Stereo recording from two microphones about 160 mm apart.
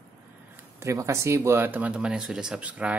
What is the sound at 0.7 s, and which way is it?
Speech, 20° right (ahead or behind).